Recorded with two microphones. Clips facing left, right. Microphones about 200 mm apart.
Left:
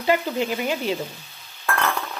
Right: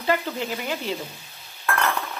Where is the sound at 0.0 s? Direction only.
15° left (ahead or behind).